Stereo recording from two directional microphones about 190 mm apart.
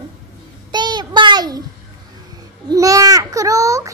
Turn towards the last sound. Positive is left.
turn(degrees=-15)  # may be behind; listen again after turning